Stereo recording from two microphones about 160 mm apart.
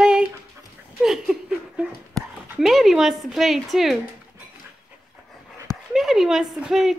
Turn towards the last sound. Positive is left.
turn(degrees=0)  # may be behind; listen again after turning